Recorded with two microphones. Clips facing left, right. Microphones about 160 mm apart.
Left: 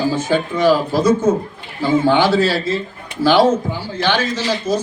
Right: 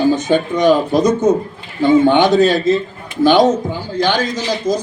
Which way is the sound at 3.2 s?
20° right (ahead or behind).